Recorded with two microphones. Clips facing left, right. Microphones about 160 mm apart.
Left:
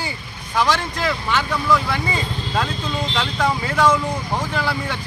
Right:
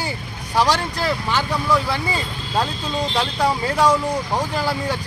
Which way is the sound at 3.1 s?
35° right (ahead or behind).